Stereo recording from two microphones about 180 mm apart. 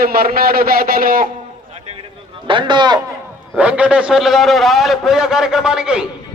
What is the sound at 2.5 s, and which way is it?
Speech, 25° right (ahead or behind).